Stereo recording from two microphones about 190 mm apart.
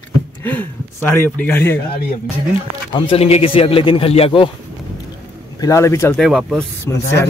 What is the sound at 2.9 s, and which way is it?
Speech, 30° left (ahead or behind).